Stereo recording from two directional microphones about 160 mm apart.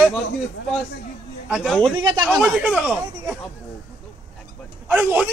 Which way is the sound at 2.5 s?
5° right (ahead or behind).